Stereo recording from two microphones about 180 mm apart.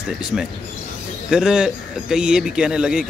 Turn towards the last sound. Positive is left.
turn(degrees=-5)  # may be behind; listen again after turning